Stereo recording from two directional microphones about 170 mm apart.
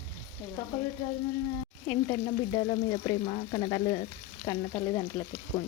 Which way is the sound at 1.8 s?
15° left (ahead or behind).